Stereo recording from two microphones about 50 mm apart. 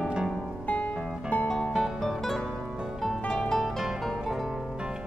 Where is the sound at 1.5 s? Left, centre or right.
Centre.